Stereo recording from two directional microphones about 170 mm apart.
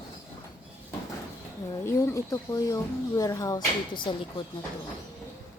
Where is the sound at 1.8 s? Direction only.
15° left (ahead or behind).